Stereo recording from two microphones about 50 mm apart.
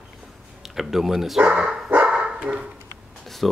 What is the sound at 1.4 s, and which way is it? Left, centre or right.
Dog, centre.